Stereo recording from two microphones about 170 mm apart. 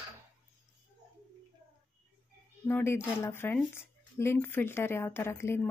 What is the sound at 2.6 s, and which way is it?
A woman's voice, 15° left (ahead or behind).